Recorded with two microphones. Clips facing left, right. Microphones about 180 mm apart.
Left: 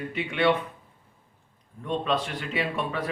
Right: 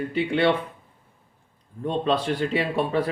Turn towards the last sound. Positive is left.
turn(degrees=-30)  # may be behind; listen again after turning